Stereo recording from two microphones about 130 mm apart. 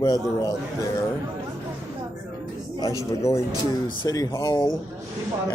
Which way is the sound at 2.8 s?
25° left (ahead or behind).